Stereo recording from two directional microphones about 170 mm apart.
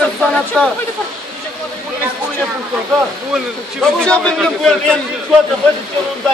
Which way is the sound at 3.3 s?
5° left (ahead or behind).